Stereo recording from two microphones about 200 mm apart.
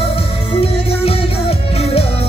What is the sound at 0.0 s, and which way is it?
Music, 30° left (ahead or behind).